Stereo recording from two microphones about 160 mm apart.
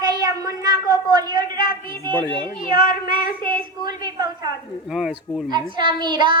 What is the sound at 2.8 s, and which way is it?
Child singing, 60° left (ahead or behind).